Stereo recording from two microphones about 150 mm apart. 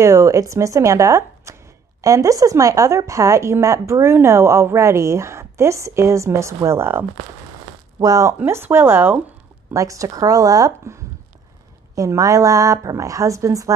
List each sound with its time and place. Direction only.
0.0 s speech: 20° right (ahead or behind)